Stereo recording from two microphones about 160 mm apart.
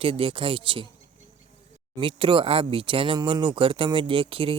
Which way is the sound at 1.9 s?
30° right (ahead or behind).